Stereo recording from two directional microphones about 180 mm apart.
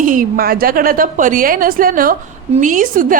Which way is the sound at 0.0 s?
50° right (ahead or behind).